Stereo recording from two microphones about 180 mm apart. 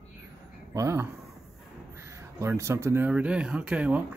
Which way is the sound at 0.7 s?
15° right (ahead or behind).